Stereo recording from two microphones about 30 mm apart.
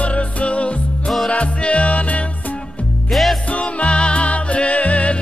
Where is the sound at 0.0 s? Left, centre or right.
Left.